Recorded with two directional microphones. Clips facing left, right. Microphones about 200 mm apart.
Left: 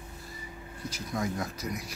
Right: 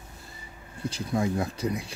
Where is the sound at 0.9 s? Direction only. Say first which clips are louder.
Right 6 dB; 30° right (ahead or behind).